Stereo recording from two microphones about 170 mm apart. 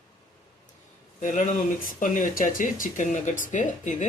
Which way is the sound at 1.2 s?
45° left (ahead or behind).